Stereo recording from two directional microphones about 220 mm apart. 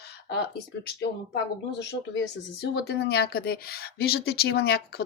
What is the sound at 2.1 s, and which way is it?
A woman's voice, 50° left (ahead or behind).